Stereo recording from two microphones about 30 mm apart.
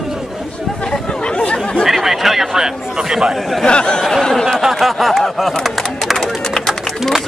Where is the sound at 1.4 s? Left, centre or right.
Left.